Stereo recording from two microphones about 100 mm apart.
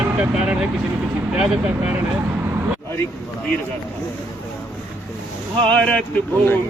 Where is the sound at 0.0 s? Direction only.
10° right (ahead or behind).